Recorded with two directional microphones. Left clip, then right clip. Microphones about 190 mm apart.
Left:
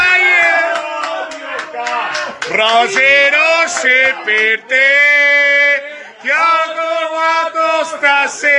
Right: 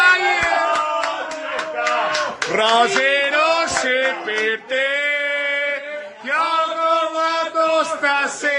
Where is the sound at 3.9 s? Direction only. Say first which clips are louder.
Left 8 dB; 10° right (ahead or behind).